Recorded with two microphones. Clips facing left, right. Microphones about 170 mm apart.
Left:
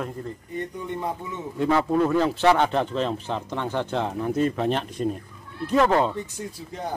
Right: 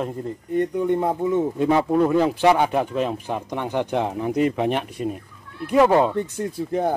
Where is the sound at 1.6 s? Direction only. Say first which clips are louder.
Even; 20° right (ahead or behind).